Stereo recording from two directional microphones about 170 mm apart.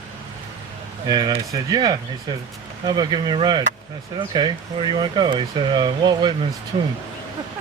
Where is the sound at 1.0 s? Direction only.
25° right (ahead or behind).